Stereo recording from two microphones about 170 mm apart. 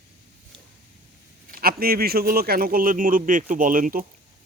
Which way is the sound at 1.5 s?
60° right (ahead or behind).